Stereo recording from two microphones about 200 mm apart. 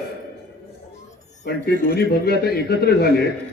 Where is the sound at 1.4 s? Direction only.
55° left (ahead or behind).